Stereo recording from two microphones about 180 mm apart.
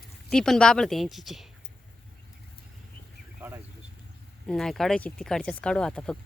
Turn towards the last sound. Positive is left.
turn(degrees=5)  # may be behind; listen again after turning